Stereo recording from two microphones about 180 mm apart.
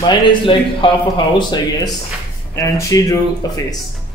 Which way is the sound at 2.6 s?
20° left (ahead or behind).